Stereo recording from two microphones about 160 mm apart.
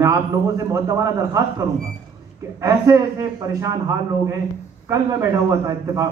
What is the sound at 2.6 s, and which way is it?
A man's voice, 20° right (ahead or behind).